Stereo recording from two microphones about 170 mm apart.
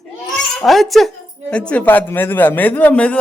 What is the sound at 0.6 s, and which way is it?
Speech, centre (ahead or behind).